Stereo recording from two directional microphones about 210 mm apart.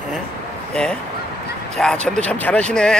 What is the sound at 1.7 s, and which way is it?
Speech, 5° left (ahead or behind).